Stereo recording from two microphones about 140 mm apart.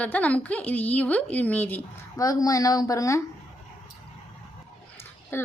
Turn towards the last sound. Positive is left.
turn(degrees=15)  # may be behind; listen again after turning